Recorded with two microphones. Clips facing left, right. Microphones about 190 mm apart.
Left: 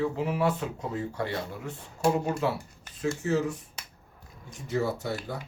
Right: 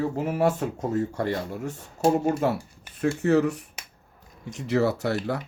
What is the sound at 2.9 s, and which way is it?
Speech, 60° right (ahead or behind).